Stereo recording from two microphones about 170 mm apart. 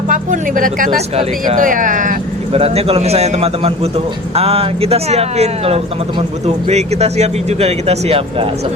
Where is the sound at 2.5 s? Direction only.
35° right (ahead or behind).